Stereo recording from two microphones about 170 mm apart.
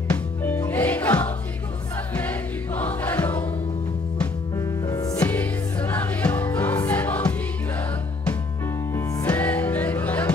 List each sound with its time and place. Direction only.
0.1 s music: 10° left (ahead or behind)
4.6 s music: 20° left (ahead or behind)
5.2 s music: 10° left (ahead or behind)
8.9 s music: 10° left (ahead or behind)